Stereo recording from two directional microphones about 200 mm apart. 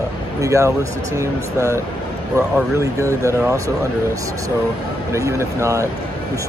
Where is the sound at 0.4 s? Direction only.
15° right (ahead or behind).